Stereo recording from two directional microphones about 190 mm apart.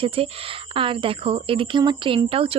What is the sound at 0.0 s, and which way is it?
A woman's voice, 30° right (ahead or behind).